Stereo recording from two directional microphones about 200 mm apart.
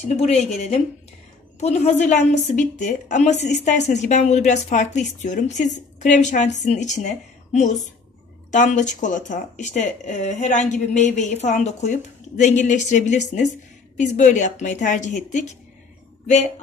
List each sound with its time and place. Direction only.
0.0 s speech: 35° left (ahead or behind)